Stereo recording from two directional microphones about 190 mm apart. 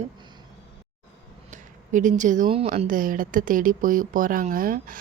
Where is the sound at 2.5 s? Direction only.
30° right (ahead or behind).